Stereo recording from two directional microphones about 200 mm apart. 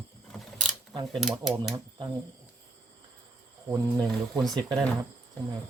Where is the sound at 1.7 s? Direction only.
20° right (ahead or behind).